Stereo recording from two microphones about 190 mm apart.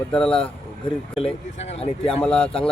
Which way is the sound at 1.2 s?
30° left (ahead or behind).